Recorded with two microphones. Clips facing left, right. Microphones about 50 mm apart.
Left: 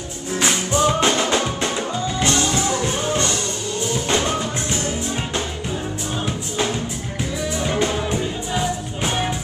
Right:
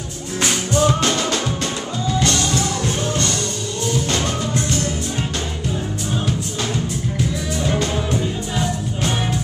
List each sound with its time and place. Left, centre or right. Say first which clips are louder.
0.4 s music: right 1 dB; centre
7.9 s music: right 1 dB; centre